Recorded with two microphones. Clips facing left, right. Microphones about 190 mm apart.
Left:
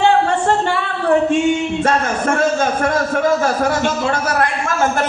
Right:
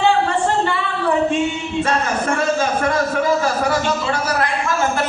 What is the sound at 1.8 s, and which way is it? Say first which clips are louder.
A man's voice: left 2 dB; 45° left (ahead or behind).